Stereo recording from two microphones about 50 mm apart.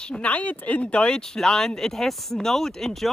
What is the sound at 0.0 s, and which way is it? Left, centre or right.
Speech, centre.